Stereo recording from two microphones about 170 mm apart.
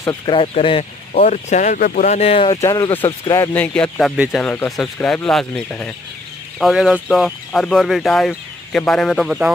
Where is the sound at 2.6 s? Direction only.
20° left (ahead or behind).